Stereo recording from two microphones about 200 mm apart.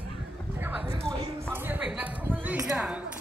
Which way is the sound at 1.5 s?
10° right (ahead or behind).